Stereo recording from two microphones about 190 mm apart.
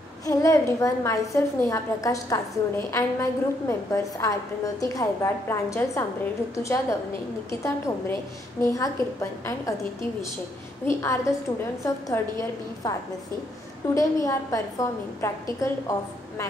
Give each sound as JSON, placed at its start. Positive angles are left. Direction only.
{"t": 0.2, "sound": "a woman's voice", "side_deg": 15}
{"t": 10.9, "sound": "a woman's voice", "side_deg": 15}
{"t": 13.9, "sound": "a woman's voice", "side_deg": 15}